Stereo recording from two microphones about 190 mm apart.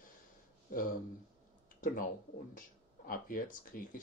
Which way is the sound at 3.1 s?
50° left (ahead or behind).